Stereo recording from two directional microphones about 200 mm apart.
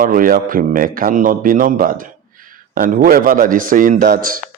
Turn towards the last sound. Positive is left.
turn(degrees=-45)  # may be behind; listen again after turning